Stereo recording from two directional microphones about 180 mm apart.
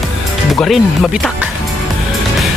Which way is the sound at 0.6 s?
Centre (ahead or behind).